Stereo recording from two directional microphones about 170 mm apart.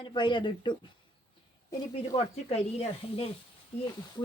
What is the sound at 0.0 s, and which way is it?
Speech, 30° left (ahead or behind).